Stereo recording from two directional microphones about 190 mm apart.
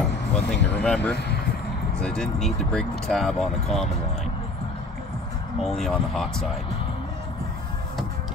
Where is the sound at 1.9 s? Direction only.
5° left (ahead or behind).